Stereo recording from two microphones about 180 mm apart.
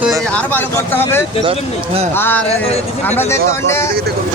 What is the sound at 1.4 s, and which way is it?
Speech, 35° right (ahead or behind).